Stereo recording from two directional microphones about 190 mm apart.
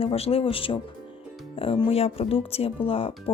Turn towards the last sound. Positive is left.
turn(degrees=30)  # may be behind; listen again after turning